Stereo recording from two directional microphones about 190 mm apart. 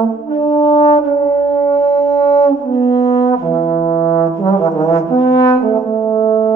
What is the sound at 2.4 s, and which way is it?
Brass instrument, 20° left (ahead or behind).